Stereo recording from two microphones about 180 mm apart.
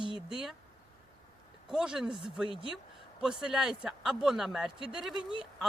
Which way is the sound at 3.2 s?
5° right (ahead or behind).